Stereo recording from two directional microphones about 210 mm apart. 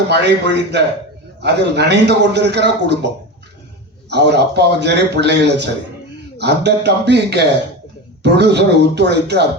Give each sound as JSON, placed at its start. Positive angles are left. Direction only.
{"t": 0.1, "sound": "a man's voice", "side_deg": -55}
{"t": 4.1, "sound": "a man's voice", "side_deg": -55}